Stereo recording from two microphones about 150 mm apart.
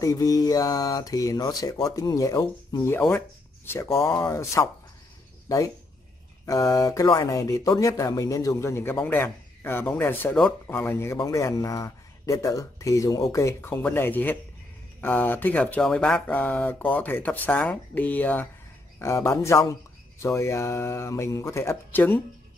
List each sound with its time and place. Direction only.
0.0 s speech: 25° left (ahead or behind)
6.4 s speech: 25° left (ahead or behind)